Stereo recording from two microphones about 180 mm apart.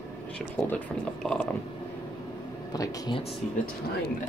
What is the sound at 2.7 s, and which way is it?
Speech, 25° left (ahead or behind).